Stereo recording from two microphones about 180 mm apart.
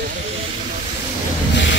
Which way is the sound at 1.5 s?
80° left.